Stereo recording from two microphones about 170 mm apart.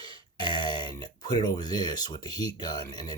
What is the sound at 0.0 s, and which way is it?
Speech, 25° left (ahead or behind).